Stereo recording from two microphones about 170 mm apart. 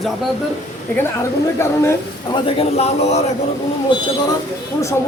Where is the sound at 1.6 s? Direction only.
15° left (ahead or behind).